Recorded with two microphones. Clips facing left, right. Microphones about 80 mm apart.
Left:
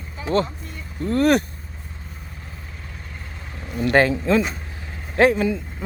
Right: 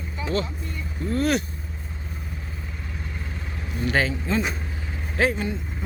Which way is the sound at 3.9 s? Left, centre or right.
Left.